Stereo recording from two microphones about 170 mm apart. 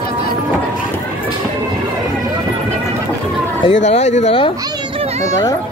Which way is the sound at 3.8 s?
40° left (ahead or behind).